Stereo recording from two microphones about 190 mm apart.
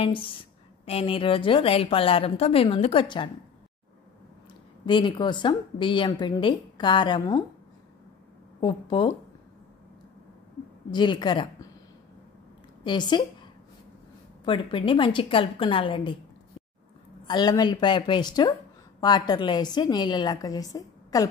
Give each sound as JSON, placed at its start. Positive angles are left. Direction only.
{"t": 0.0, "sound": "a woman's voice", "side_deg": 25}
{"t": 4.8, "sound": "a woman's voice", "side_deg": 25}
{"t": 8.5, "sound": "a woman's voice", "side_deg": 25}
{"t": 10.9, "sound": "a woman's voice", "side_deg": 25}
{"t": 12.8, "sound": "a woman's voice", "side_deg": 25}
{"t": 14.4, "sound": "a woman's voice", "side_deg": 25}
{"t": 17.3, "sound": "a woman's voice", "side_deg": 20}